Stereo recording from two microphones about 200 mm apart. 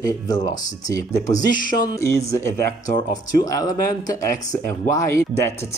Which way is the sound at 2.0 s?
15° left (ahead or behind).